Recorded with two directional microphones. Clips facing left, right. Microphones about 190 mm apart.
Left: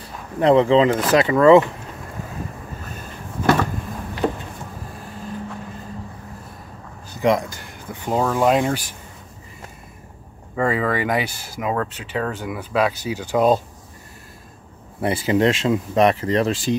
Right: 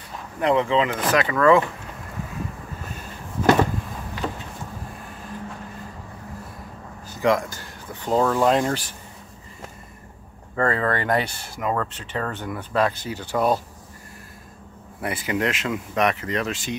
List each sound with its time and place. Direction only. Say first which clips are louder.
0.4 s speech: left 6 dB; 30° left (ahead or behind)
7.2 s speech: left 2 dB; 20° left (ahead or behind)
10.5 s speech: left 2 dB; 10° left (ahead or behind)
15.0 s speech: left 7 dB; 30° left (ahead or behind)